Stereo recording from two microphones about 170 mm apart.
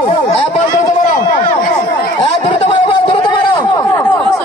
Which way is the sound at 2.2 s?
40° left (ahead or behind).